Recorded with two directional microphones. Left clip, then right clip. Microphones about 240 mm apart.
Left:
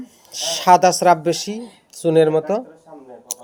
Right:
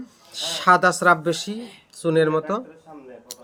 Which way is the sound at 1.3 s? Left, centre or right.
Centre.